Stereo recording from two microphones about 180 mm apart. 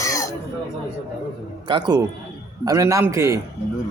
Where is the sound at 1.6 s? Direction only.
25° right (ahead or behind).